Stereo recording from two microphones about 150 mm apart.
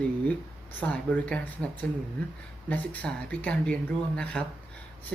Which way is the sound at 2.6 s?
10° left (ahead or behind).